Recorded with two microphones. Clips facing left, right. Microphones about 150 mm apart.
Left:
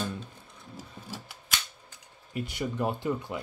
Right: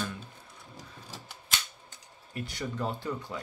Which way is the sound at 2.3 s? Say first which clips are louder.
Left 4 dB; 15° left (ahead or behind).